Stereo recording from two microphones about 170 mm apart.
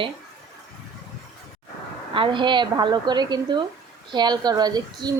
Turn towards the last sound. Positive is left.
turn(degrees=-25)  # may be behind; listen again after turning